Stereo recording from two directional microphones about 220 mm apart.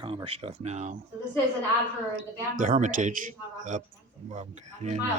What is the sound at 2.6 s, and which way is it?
Speech, 35° right (ahead or behind).